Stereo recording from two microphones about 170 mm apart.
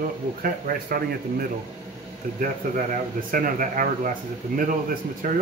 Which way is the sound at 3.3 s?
55° right (ahead or behind).